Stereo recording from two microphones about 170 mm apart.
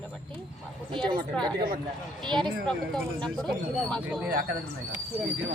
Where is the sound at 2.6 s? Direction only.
5° left (ahead or behind).